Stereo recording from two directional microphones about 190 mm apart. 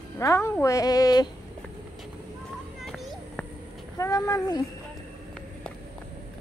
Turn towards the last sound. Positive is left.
turn(degrees=20)  # may be behind; listen again after turning